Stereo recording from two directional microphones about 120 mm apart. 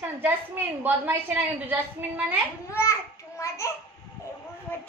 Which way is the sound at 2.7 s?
25° left (ahead or behind).